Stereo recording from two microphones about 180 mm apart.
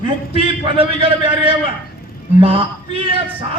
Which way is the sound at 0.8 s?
30° right (ahead or behind).